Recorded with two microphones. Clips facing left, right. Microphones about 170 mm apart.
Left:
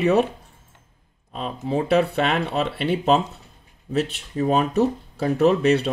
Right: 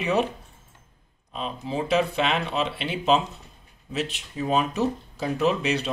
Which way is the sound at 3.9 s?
45° left (ahead or behind).